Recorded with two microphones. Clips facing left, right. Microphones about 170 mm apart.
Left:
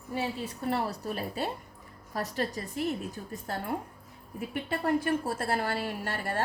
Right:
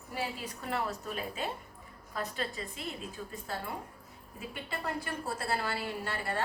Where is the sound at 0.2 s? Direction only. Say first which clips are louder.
Left 4 dB; 30° left (ahead or behind).